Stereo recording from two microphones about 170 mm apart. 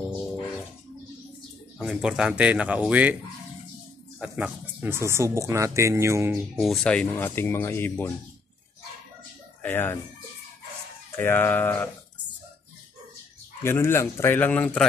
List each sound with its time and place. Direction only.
1.8 s speech: 5° right (ahead or behind)
4.2 s speech: 10° right (ahead or behind)
6.5 s speech: centre (ahead or behind)
9.6 s speech: 10° left (ahead or behind)
11.1 s speech: 15° left (ahead or behind)
13.7 s speech: 15° left (ahead or behind)